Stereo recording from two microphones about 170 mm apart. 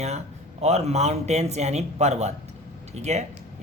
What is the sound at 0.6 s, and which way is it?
Speech, 40° right (ahead or behind).